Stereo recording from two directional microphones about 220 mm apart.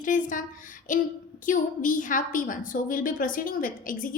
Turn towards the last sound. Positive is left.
turn(degrees=40)  # may be behind; listen again after turning